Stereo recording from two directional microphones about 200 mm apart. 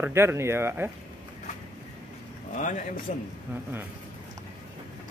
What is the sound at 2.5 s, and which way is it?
Speech, 40° left (ahead or behind).